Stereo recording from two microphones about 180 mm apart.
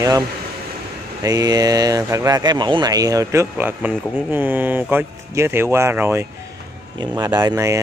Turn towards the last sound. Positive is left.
turn(degrees=-15)  # may be behind; listen again after turning